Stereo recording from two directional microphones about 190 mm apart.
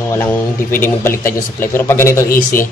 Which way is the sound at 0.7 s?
10° left (ahead or behind).